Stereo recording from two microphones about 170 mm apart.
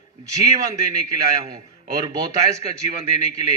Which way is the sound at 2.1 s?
20° right (ahead or behind).